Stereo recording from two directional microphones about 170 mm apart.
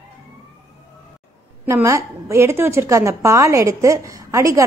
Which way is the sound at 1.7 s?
15° right (ahead or behind).